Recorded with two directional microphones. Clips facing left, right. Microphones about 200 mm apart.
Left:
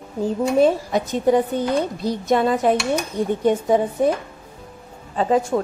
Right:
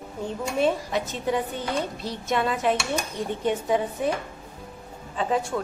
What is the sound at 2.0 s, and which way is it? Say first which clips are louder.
A woman's voice: left 8 dB; 40° left (ahead or behind).